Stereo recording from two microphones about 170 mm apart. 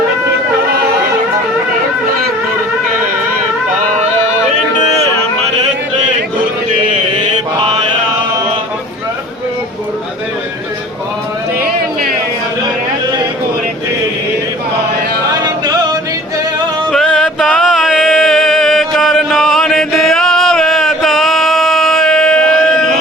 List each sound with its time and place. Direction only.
15.4 s music: 20° right (ahead or behind)
16.9 s music: centre (ahead or behind)